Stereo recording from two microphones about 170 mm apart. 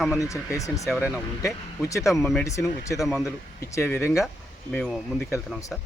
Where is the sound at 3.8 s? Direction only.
10° left (ahead or behind).